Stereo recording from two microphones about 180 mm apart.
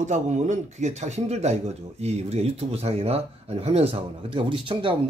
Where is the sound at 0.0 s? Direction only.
40° right (ahead or behind).